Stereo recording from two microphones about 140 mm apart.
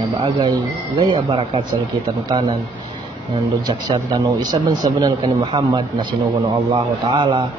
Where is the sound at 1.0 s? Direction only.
35° right (ahead or behind).